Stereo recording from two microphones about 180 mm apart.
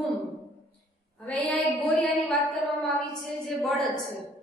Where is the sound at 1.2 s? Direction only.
10° left (ahead or behind).